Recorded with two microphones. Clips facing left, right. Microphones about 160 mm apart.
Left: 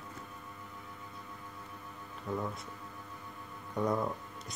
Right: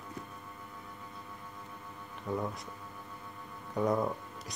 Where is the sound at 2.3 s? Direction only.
15° right (ahead or behind).